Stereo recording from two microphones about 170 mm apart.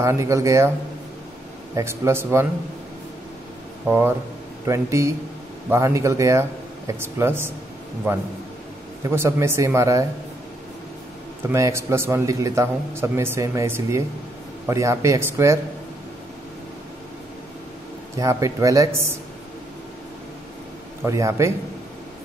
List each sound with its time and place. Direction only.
0.0 s speech: 15° right (ahead or behind)
1.8 s speech: 15° right (ahead or behind)
3.8 s speech: 10° right (ahead or behind)
11.4 s speech: 15° right (ahead or behind)
18.1 s speech: 20° right (ahead or behind)
21.0 s speech: 15° right (ahead or behind)